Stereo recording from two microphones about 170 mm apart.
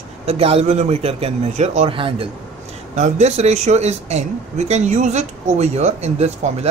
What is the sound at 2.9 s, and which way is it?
Speech, 45° right (ahead or behind).